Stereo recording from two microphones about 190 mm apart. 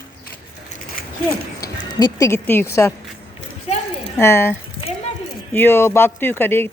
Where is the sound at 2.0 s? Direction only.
15° left (ahead or behind).